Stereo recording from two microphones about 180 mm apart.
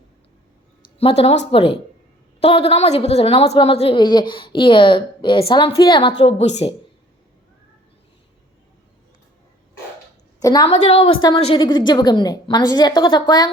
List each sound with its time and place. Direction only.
0.9 s a woman's voice: 35° left (ahead or behind)
10.4 s a woman's voice: 20° left (ahead or behind)
10.7 s a woman's voice: 35° left (ahead or behind)